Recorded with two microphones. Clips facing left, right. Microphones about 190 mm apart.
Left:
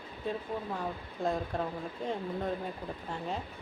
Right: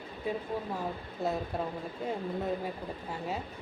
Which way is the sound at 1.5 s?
5° right (ahead or behind).